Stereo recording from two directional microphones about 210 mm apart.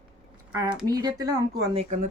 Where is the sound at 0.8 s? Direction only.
20° right (ahead or behind).